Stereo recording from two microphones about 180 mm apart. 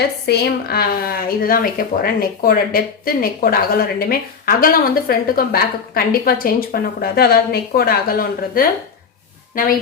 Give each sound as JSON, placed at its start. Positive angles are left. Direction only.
{"t": 0.0, "sound": "a woman's voice", "side_deg": 65}